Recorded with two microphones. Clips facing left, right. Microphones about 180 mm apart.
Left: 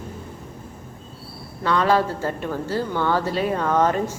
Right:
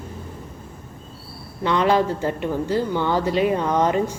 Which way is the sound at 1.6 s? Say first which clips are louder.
Right 1 dB; 20° right (ahead or behind).